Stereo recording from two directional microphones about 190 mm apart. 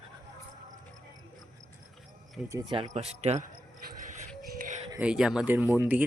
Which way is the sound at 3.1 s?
35° right (ahead or behind).